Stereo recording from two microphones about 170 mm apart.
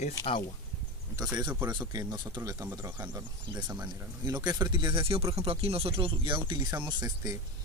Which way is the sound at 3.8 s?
25° right (ahead or behind).